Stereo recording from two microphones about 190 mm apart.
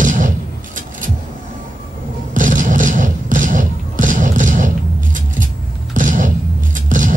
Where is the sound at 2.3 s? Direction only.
45° right (ahead or behind).